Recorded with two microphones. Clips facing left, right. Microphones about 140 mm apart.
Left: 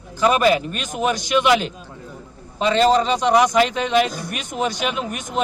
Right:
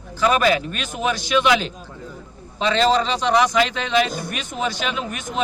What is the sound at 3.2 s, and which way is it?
Speech, 10° left (ahead or behind).